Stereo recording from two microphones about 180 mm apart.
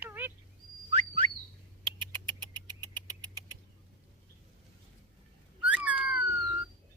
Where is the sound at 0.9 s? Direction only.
30° right (ahead or behind).